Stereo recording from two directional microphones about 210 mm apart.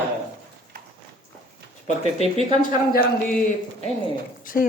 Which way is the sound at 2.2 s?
30° right (ahead or behind).